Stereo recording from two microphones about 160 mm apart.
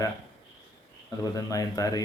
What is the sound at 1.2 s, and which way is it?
Speech, 20° left (ahead or behind).